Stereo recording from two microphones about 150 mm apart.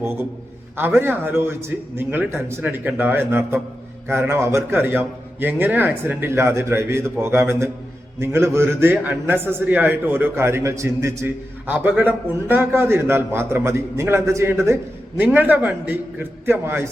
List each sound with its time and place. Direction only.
0.8 s a man's voice: 15° right (ahead or behind)